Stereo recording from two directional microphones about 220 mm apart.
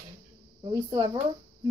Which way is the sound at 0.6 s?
20° right (ahead or behind).